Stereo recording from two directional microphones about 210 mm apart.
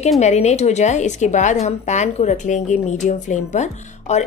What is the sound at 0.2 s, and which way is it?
A woman's voice, 30° left (ahead or behind).